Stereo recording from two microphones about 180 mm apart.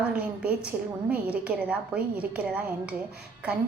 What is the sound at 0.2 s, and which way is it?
A woman's voice, 5° right (ahead or behind).